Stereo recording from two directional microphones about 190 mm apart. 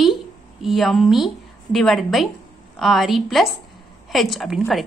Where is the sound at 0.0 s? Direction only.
Centre (ahead or behind).